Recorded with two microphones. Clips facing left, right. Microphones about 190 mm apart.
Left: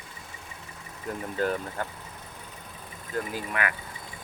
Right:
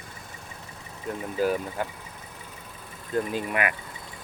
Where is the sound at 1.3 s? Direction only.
5° right (ahead or behind).